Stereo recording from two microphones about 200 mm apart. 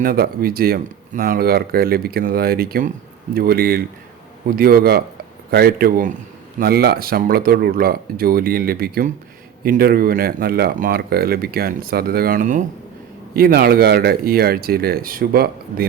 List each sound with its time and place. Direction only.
0.0 s speech: 50° right (ahead or behind)